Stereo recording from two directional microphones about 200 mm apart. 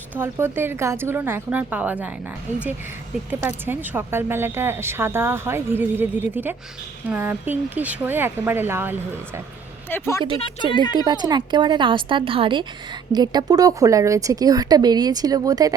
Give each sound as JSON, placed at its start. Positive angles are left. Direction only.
{"t": 0.2, "sound": "speech", "side_deg": -10}
{"t": 3.2, "sound": "speech", "side_deg": -10}
{"t": 9.9, "sound": "speech", "side_deg": 15}
{"t": 10.9, "sound": "a woman's voice", "side_deg": -20}